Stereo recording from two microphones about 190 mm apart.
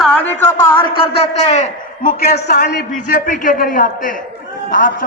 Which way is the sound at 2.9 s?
45° left (ahead or behind).